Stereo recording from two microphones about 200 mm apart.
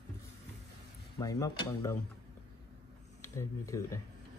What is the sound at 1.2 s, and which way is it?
Speech, 15° left (ahead or behind).